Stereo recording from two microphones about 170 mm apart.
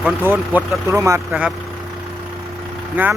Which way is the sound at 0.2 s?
15° right (ahead or behind).